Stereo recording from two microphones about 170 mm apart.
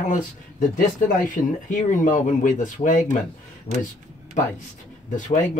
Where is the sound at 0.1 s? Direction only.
50° left (ahead or behind).